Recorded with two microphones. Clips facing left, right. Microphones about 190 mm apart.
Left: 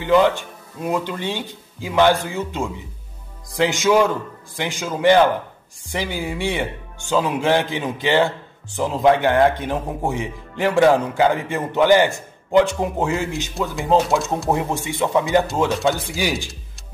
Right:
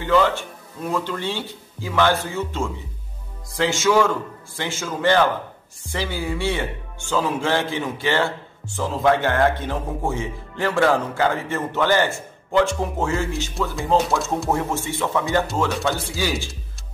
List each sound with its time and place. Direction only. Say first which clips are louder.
0.0 s speech: left 3 dB; 15° left (ahead or behind)